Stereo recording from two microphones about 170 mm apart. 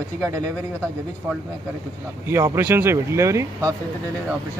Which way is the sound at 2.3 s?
15° right (ahead or behind).